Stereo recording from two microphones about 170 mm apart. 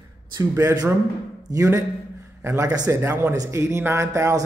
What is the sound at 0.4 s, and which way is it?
A man's voice, 20° right (ahead or behind).